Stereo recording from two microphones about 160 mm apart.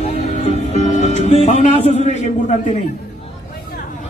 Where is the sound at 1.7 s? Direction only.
40° left (ahead or behind).